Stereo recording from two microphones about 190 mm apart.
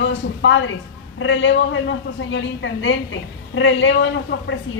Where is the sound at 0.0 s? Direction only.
75° left (ahead or behind).